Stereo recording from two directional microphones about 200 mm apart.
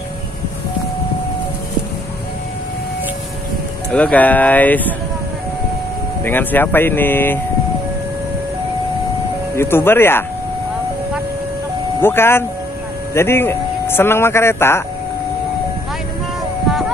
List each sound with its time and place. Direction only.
3.9 s speech: 5° left (ahead or behind)
6.2 s speech: 10° left (ahead or behind)
9.6 s speech: 10° left (ahead or behind)
12.0 s speech: 10° left (ahead or behind)
16.6 s a sound: centre (ahead or behind)